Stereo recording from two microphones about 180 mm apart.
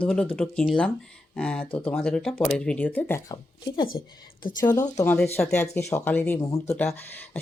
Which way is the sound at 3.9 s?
55° left (ahead or behind).